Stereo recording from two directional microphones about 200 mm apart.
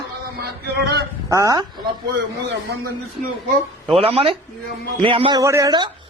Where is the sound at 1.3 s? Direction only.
15° right (ahead or behind).